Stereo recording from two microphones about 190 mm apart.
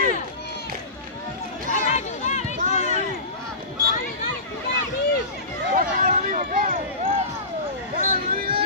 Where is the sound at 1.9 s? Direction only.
40° left (ahead or behind).